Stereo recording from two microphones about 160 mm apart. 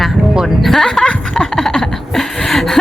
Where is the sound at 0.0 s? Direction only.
Centre (ahead or behind).